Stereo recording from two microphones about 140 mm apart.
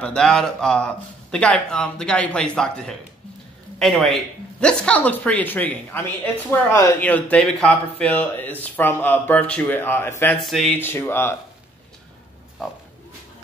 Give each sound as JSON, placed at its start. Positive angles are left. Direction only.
{"t": 0.0, "sound": "speech", "side_deg": 5}
{"t": 10.4, "sound": "speech", "side_deg": 0}
{"t": 10.8, "sound": "speech", "side_deg": 15}